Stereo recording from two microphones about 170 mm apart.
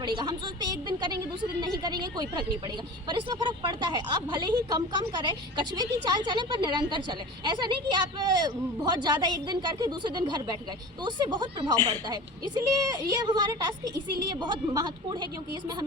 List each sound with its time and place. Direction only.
0.0 s a woman's voice: 25° right (ahead or behind)